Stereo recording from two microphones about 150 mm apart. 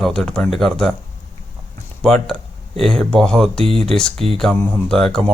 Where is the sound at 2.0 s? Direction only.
5° left (ahead or behind).